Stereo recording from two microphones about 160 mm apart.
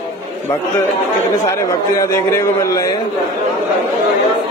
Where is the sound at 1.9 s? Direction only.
20° left (ahead or behind).